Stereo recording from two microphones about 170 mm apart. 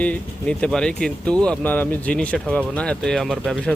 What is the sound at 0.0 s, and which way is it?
Speech, 5° left (ahead or behind).